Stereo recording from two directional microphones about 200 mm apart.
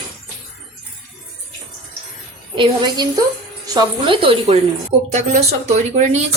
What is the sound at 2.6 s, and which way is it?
Speech, 20° right (ahead or behind).